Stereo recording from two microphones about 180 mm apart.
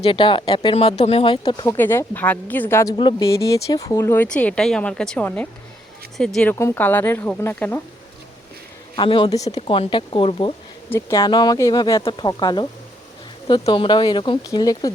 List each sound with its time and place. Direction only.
0.0 s speech: 30° left (ahead or behind)
3.0 s speech: 25° left (ahead or behind)
9.0 s speech: 30° left (ahead or behind)
10.8 s speech: 10° left (ahead or behind)
11.2 s speech: 25° left (ahead or behind)